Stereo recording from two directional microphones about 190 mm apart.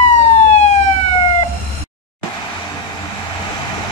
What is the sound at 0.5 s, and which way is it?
Emergency vehicle, 35° left (ahead or behind).